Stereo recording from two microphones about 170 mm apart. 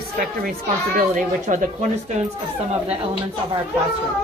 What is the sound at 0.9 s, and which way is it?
Speech, 50° right (ahead or behind).